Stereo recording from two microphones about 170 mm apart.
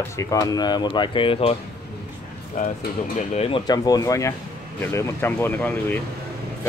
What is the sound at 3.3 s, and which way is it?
Speech, 30° left (ahead or behind).